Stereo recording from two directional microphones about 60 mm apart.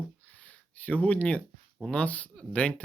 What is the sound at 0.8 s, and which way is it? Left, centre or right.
Speech, left.